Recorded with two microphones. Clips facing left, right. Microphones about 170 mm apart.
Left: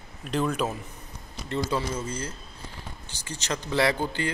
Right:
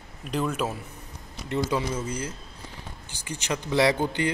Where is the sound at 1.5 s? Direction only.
15° right (ahead or behind).